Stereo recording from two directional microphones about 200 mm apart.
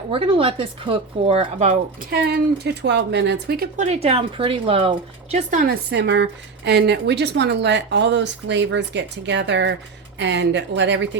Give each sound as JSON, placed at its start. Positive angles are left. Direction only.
{"t": 0.1, "sound": "speech", "side_deg": -25}
{"t": 2.0, "sound": "speech", "side_deg": -55}
{"t": 3.8, "sound": "speech", "side_deg": -30}
{"t": 5.5, "sound": "speech", "side_deg": -45}
{"t": 5.9, "sound": "speech", "side_deg": -60}